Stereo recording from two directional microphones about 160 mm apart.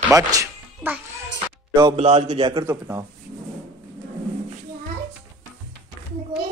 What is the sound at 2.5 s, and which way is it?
Speech, 20° right (ahead or behind).